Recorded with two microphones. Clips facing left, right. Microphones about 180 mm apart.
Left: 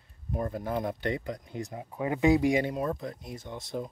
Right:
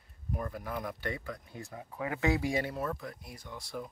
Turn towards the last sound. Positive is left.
turn(degrees=25)  # may be behind; listen again after turning